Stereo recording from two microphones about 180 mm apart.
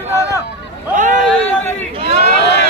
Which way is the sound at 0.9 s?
45° right (ahead or behind).